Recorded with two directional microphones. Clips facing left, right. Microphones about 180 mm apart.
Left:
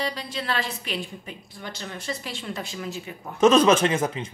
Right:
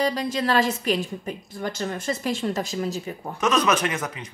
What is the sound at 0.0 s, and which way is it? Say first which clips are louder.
A woman's voice: right 6 dB; 45° right (ahead or behind).